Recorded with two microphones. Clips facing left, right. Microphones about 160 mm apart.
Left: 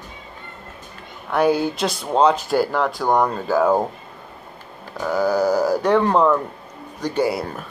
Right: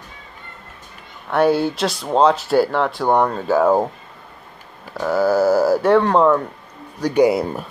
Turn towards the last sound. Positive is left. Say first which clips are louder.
# right 6 dB
turn(degrees=-20)  # may be behind; listen again after turning